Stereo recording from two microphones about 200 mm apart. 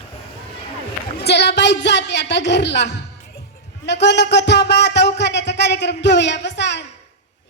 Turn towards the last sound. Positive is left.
turn(degrees=60)  # may be behind; listen again after turning